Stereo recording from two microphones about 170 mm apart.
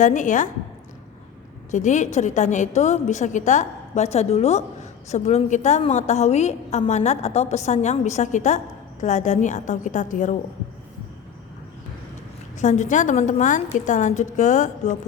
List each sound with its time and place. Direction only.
0.0 s a woman's voice: 45° left (ahead or behind)
1.7 s a woman's voice: 45° left (ahead or behind)
12.5 s a woman's voice: 45° left (ahead or behind)